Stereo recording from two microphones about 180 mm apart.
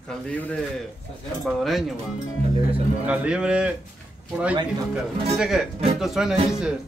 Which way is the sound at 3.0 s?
10° right (ahead or behind).